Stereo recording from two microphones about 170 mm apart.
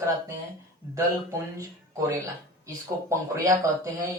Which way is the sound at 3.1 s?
20° right (ahead or behind).